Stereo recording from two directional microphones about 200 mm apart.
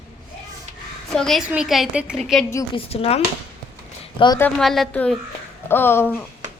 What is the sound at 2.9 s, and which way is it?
Speech, 30° left (ahead or behind).